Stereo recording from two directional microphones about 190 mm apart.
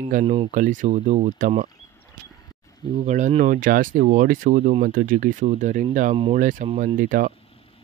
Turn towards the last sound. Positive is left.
turn(degrees=-45)  # may be behind; listen again after turning